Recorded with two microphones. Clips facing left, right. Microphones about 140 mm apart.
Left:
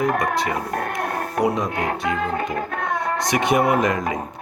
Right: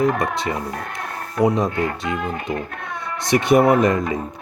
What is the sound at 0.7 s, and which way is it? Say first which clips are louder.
Speech: left 5 dB; 55° left (ahead or behind).